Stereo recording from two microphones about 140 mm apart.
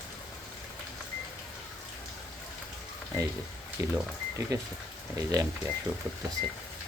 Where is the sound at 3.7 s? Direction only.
20° right (ahead or behind).